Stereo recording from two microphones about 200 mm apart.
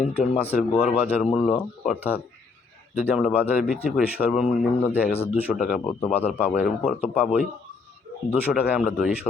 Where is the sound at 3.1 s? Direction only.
5° right (ahead or behind).